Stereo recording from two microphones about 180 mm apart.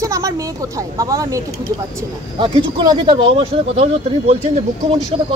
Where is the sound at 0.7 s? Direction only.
20° right (ahead or behind).